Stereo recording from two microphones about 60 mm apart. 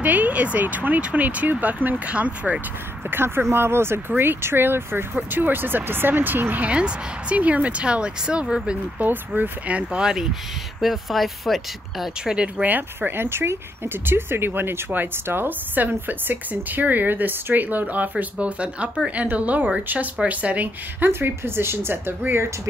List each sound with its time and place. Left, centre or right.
0.0 s speech: right
3.1 s speech: right
9.8 s speech: centre
10.8 s speech: centre
12.6 s speech: right
21.1 s speech: right